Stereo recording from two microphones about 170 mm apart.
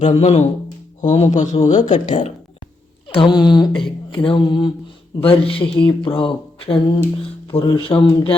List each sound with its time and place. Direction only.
0.0 s speech: 40° left (ahead or behind)
2.0 s speech: 35° left (ahead or behind)
3.2 s a sound: 25° left (ahead or behind)
5.3 s speech: 30° left (ahead or behind)